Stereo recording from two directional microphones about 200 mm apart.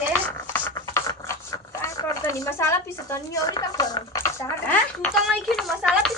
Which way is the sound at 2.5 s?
10° left (ahead or behind).